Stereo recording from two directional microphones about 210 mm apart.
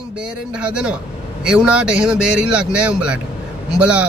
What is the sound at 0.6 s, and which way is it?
Speech, 5° right (ahead or behind).